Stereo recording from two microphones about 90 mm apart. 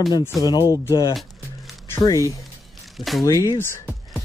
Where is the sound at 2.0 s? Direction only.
40° left (ahead or behind).